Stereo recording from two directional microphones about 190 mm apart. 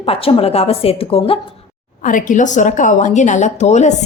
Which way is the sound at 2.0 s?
45° left (ahead or behind).